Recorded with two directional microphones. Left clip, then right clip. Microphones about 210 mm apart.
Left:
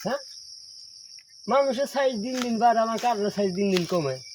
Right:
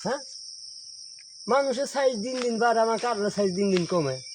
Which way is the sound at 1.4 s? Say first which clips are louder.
Left 1 dB; 10° right (ahead or behind).